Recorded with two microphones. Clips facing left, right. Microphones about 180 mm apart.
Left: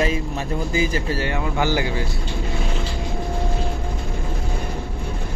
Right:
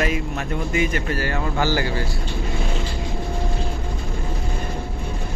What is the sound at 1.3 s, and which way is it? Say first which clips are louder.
Speech: even; 15° left (ahead or behind).